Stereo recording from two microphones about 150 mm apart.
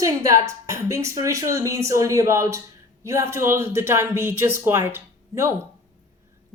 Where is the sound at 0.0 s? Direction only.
20° right (ahead or behind).